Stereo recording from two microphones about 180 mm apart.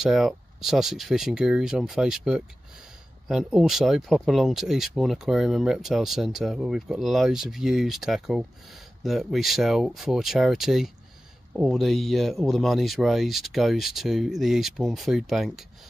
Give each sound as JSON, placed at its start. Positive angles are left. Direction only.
{"t": 0.0, "sound": "speech", "side_deg": 0}